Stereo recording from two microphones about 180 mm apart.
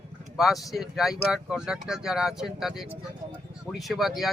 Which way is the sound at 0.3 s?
Centre (ahead or behind).